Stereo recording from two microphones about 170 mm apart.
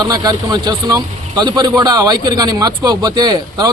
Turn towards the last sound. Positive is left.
turn(degrees=-25)  # may be behind; listen again after turning